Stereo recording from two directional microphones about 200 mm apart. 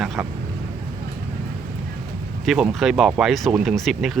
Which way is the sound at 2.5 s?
Centre (ahead or behind).